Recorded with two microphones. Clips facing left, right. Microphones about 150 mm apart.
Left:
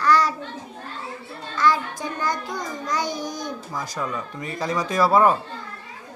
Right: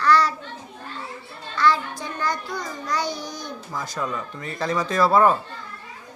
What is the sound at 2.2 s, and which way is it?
Speech, 15° left (ahead or behind).